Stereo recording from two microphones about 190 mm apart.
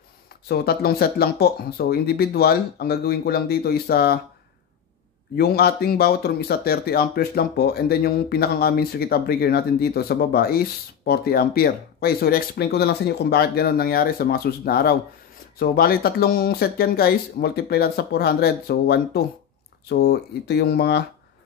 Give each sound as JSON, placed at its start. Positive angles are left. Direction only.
{"t": 0.5, "sound": "speech", "side_deg": 55}
{"t": 5.3, "sound": "speech", "side_deg": 60}